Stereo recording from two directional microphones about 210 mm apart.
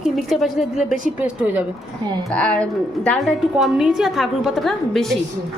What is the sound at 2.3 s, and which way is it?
A woman's voice, 5° left (ahead or behind).